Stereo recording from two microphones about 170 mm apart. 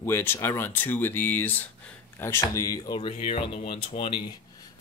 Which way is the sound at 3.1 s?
35° left (ahead or behind).